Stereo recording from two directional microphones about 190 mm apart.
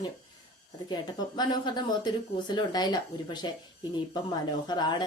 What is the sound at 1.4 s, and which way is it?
A woman's voice, 20° left (ahead or behind).